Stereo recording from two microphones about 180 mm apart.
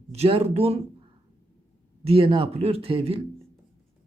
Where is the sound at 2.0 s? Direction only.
30° right (ahead or behind).